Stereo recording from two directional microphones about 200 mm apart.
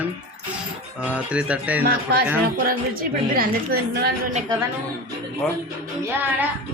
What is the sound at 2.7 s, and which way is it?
A woman's voice, 45° right (ahead or behind).